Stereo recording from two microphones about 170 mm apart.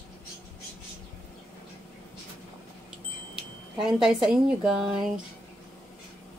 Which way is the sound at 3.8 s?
5° right (ahead or behind).